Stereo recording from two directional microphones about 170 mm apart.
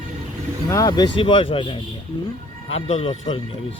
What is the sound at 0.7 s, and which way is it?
Speech, 20° left (ahead or behind).